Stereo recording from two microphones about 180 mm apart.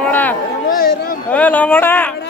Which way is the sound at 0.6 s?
55° left (ahead or behind).